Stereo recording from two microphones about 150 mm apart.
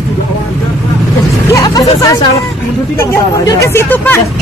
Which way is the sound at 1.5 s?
20° left (ahead or behind).